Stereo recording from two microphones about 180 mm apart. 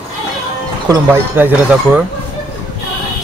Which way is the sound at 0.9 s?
10° right (ahead or behind).